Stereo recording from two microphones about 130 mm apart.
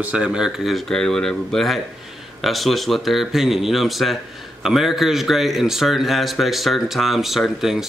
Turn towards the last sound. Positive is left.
turn(degrees=-5)  # may be behind; listen again after turning